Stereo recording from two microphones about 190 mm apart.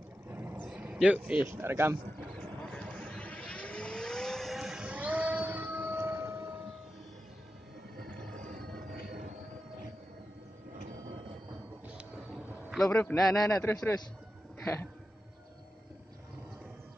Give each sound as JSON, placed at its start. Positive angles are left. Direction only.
{"t": 0.3, "sound": "vehicle", "side_deg": -10}
{"t": 0.6, "sound": "a sound", "side_deg": -5}
{"t": 1.5, "sound": "speech", "side_deg": -10}
{"t": 2.7, "sound": "vehicle", "side_deg": 5}
{"t": 8.0, "sound": "a sound", "side_deg": -45}
{"t": 12.6, "sound": "a man's voice", "side_deg": 0}
{"t": 13.5, "sound": "a man's voice", "side_deg": 15}